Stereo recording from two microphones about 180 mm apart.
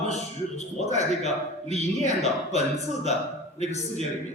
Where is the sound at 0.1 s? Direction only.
40° left (ahead or behind).